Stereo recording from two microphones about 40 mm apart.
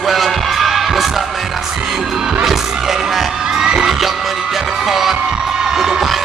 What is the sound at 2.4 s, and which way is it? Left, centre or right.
Music, centre.